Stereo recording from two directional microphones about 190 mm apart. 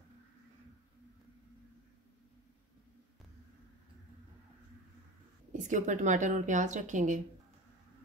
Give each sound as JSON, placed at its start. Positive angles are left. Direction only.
{"t": 5.5, "sound": "speech", "side_deg": -40}